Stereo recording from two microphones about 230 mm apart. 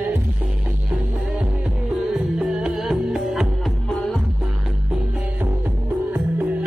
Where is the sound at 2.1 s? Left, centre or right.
Centre.